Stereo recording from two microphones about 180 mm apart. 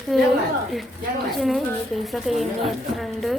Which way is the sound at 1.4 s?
Centre (ahead or behind).